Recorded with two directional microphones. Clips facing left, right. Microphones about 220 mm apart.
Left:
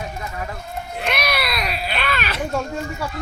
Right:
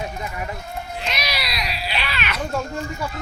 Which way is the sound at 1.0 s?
55° left (ahead or behind).